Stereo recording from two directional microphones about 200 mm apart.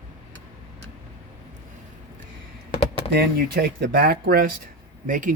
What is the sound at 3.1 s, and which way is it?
Speech, 55° right (ahead or behind).